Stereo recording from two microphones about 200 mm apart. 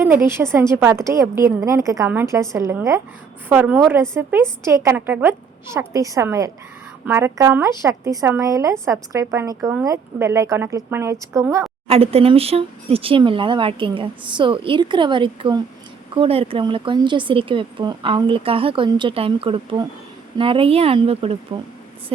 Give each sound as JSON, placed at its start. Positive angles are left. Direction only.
{"t": 0.0, "sound": "a woman's voice", "side_deg": -10}
{"t": 11.9, "sound": "speech", "side_deg": -30}